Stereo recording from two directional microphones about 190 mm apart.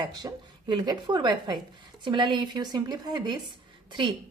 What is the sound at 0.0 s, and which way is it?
A woman's voice, 20° right (ahead or behind).